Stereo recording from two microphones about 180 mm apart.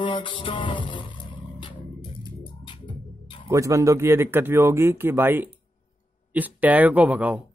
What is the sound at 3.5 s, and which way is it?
Speech, 15° right (ahead or behind).